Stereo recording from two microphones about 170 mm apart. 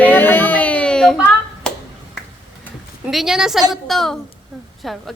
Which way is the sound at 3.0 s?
Centre (ahead or behind).